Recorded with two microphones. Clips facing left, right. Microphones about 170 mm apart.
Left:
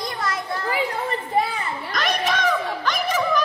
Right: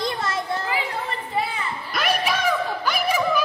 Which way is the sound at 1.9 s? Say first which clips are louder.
Even; 10° right (ahead or behind).